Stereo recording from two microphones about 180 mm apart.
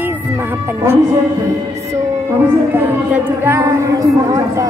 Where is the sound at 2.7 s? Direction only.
10° right (ahead or behind).